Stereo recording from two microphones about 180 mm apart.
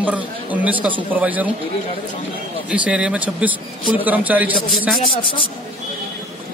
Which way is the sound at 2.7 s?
5° right (ahead or behind).